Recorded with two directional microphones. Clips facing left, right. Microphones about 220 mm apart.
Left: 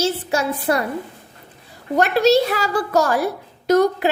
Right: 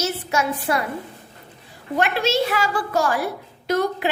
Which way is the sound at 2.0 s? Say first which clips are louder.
Left 6 dB; 40° left (ahead or behind).